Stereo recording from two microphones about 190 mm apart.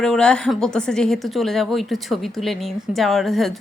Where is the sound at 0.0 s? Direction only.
5° left (ahead or behind).